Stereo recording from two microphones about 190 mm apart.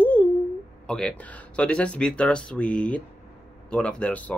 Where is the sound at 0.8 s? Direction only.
5° left (ahead or behind).